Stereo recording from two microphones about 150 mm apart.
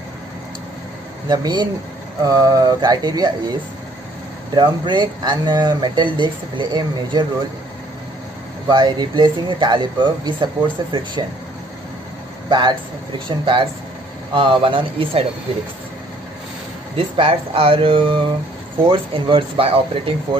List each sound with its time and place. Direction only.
1.3 s speech: 25° right (ahead or behind)
4.6 s speech: 30° right (ahead or behind)
8.6 s speech: 30° right (ahead or behind)
12.4 s speech: 30° right (ahead or behind)
14.3 s speech: 35° right (ahead or behind)
16.9 s speech: 40° right (ahead or behind)